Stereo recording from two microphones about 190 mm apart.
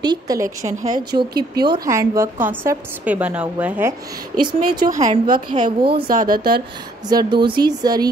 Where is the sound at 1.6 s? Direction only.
20° right (ahead or behind).